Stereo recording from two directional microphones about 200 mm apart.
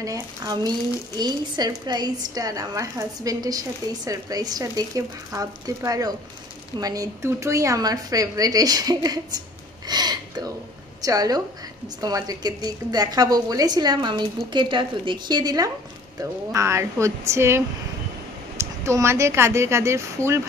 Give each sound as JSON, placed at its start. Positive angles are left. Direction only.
{"t": 0.0, "sound": "speech", "side_deg": -15}
{"t": 9.8, "sound": "a sound", "side_deg": -20}
{"t": 11.1, "sound": "a woman's voice", "side_deg": -20}